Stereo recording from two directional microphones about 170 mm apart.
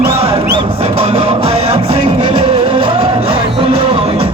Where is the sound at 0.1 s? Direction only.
35° right (ahead or behind).